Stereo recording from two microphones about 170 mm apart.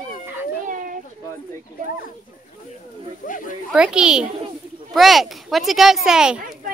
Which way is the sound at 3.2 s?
50° left (ahead or behind).